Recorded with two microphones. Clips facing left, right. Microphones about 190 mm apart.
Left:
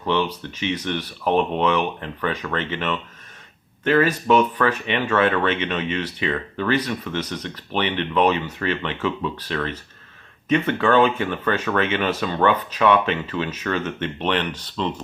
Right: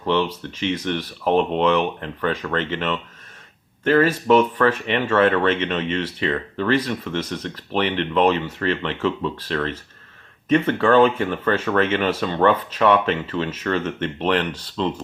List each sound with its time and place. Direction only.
0.0 s speech: 30° right (ahead or behind)
2.0 s speech: 40° right (ahead or behind)